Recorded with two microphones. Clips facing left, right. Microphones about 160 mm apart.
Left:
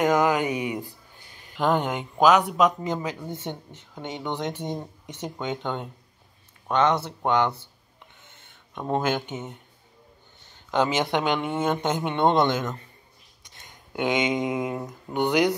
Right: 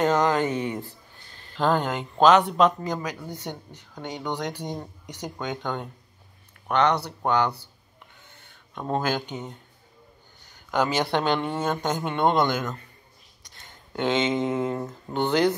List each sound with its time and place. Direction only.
0.0 s speech: 10° left (ahead or behind)
2.8 s speech: 25° left (ahead or behind)
8.2 s a sound: 20° left (ahead or behind)
10.5 s speech: 25° left (ahead or behind)